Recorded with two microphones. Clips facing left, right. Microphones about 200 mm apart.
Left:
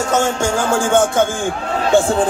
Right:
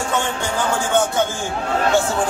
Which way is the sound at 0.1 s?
45° left (ahead or behind).